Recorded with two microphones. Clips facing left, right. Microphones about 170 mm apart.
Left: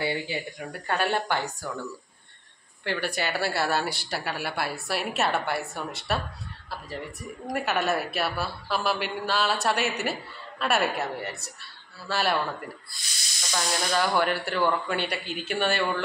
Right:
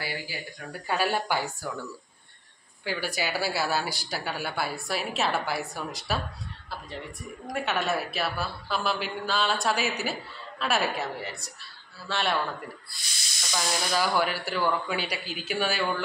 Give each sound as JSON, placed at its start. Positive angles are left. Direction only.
{"t": 0.0, "sound": "speech", "side_deg": 25}
{"t": 0.8, "sound": "a woman's voice", "side_deg": -5}
{"t": 2.8, "sound": "a woman's voice", "side_deg": -5}
{"t": 7.5, "sound": "a woman's voice", "side_deg": 5}
{"t": 13.5, "sound": "a woman's voice", "side_deg": 0}